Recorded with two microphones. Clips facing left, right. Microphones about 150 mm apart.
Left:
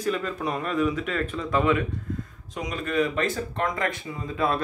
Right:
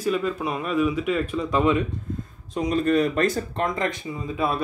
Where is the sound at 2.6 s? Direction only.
35° right (ahead or behind).